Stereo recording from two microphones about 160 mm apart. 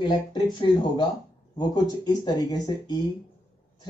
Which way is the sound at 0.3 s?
30° left (ahead or behind).